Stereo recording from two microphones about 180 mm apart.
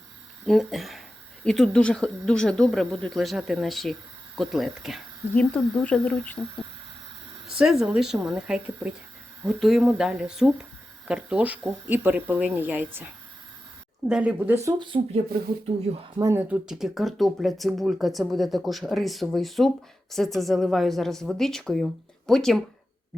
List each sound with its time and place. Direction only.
0.4 s speech: centre (ahead or behind)
7.6 s speech: 5° right (ahead or behind)
14.1 s speech: 5° right (ahead or behind); by 15.2 s 30° right (ahead or behind)
16.1 s speech: 15° right (ahead or behind); by 22.6 s centre (ahead or behind)